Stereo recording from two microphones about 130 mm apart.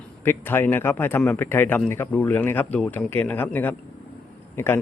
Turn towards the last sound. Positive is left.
turn(degrees=15)  # may be behind; listen again after turning